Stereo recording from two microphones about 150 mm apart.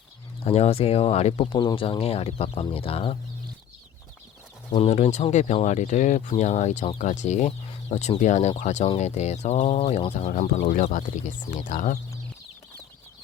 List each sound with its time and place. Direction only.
0.4 s speech: 40° left (ahead or behind)
4.7 s speech: 45° left (ahead or behind)